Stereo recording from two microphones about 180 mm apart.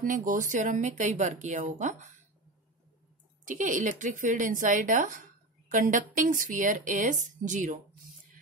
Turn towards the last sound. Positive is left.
turn(degrees=-45)  # may be behind; listen again after turning